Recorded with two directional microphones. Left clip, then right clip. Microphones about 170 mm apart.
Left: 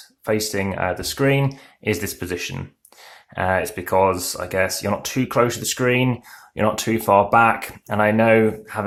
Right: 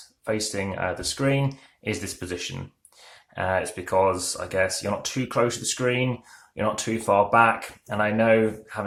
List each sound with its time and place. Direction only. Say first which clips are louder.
0.3 s speech: left 5 dB; 25° left (ahead or behind)